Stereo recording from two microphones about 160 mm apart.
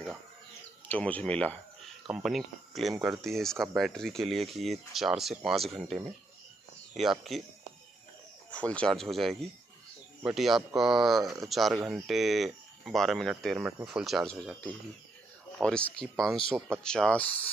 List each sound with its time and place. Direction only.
0.8 s speech: 10° left (ahead or behind)
8.5 s speech: 5° left (ahead or behind)
15.6 s speech: 5° left (ahead or behind)
16.5 s speech: 15° right (ahead or behind)
16.8 s speech: 5° left (ahead or behind)